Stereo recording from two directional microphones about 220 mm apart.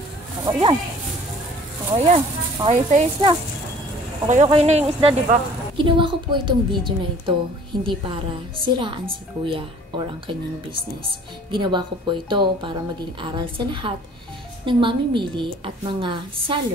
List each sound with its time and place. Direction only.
0.5 s a woman's voice: 20° right (ahead or behind)
2.6 s a woman's voice: 30° right (ahead or behind)